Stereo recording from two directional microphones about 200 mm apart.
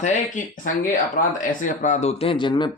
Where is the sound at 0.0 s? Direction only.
40° left (ahead or behind).